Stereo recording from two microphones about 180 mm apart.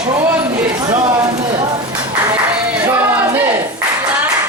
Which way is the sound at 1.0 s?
20° right (ahead or behind).